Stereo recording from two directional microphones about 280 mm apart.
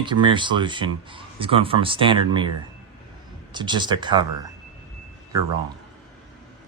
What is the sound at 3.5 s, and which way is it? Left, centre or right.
Speech, centre.